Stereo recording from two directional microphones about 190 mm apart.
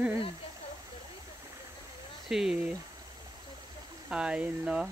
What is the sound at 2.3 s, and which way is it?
Speech, centre (ahead or behind).